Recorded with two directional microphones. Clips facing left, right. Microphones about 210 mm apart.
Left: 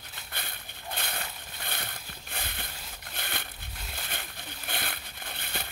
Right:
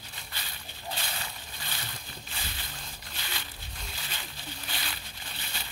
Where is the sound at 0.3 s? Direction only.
55° left (ahead or behind).